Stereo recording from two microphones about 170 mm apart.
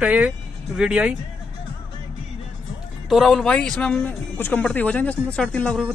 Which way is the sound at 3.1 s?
Centre (ahead or behind).